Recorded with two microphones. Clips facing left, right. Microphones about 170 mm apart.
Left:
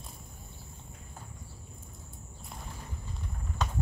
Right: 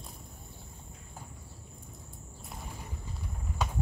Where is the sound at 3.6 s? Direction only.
10° right (ahead or behind).